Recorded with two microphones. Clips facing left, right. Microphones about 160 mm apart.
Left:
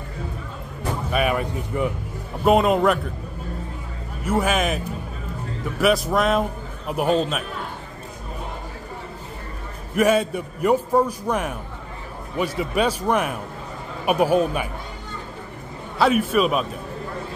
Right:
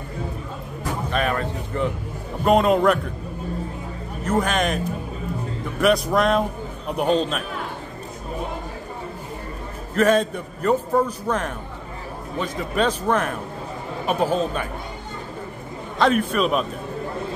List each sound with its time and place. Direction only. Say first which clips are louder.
1.1 s a man's voice: left 2 dB; 10° left (ahead or behind)
4.2 s a man's voice: even; 10° left (ahead or behind)
9.9 s a man's voice: even; 10° left (ahead or behind)
16.0 s a man's voice: left 1 dB; 5° left (ahead or behind)